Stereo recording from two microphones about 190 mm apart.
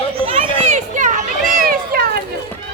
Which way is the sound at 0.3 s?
40° right (ahead or behind).